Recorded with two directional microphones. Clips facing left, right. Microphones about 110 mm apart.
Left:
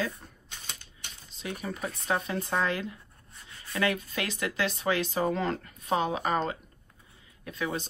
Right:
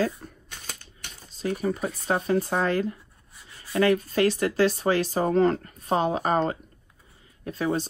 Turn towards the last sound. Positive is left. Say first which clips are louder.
# right 4 dB
turn(degrees=-35)  # may be behind; listen again after turning